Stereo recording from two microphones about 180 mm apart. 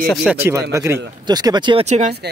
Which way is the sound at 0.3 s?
15° right (ahead or behind).